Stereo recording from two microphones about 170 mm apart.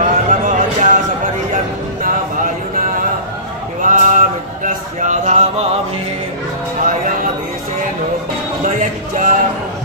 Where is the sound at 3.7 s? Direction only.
50° right (ahead or behind).